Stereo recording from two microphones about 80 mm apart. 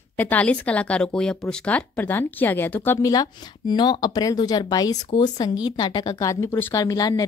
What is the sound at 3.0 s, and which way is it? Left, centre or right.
Speech, left.